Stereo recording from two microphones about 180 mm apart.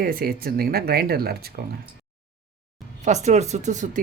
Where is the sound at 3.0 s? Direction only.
40° right (ahead or behind).